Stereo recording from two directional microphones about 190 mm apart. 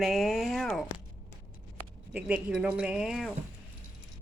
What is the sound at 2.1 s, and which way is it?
A woman's voice, 5° right (ahead or behind).